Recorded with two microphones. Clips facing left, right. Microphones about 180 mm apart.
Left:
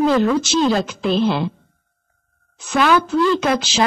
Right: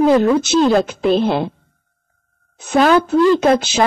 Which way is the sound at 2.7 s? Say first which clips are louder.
Right 4 dB; 40° right (ahead or behind).